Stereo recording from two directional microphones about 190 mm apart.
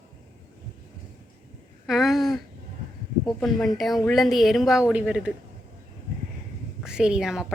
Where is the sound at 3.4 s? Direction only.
Centre (ahead or behind).